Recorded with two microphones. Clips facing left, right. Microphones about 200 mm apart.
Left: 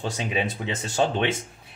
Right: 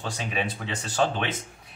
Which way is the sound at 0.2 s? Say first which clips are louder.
Left 2 dB; 20° left (ahead or behind).